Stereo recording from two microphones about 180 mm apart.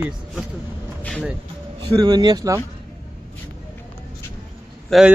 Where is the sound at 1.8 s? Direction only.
25° right (ahead or behind).